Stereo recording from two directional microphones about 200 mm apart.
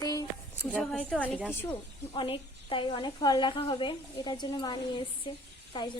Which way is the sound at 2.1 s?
25° left (ahead or behind).